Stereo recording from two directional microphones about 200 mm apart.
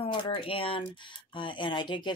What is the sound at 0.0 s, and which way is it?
Speech, 25° left (ahead or behind).